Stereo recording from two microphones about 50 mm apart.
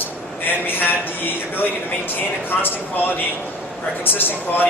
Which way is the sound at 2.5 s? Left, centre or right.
Centre.